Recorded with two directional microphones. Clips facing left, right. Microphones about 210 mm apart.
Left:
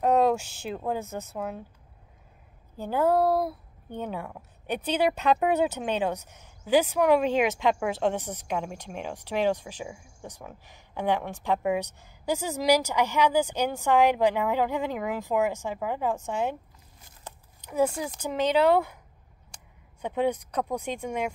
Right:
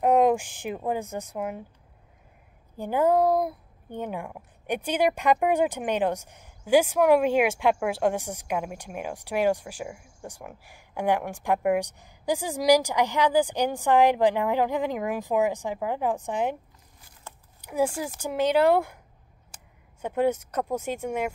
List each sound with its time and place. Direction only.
0.0 s a woman's voice: 15° right (ahead or behind)
2.8 s speech: 15° right (ahead or behind)
17.3 s a sound: 15° left (ahead or behind)
17.6 s speech: 10° right (ahead or behind)